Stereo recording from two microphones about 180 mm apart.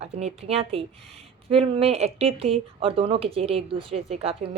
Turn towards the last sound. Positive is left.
turn(degrees=-35)  # may be behind; listen again after turning